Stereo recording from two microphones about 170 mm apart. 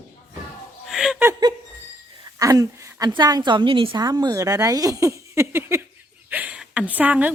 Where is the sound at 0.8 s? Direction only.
5° right (ahead or behind).